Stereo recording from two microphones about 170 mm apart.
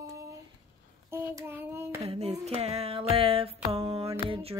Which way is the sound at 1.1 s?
15° right (ahead or behind).